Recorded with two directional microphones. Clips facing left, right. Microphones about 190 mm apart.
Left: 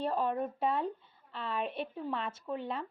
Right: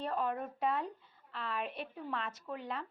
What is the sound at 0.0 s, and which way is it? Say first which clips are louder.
A woman's voice: left 4 dB; 30° left (ahead or behind).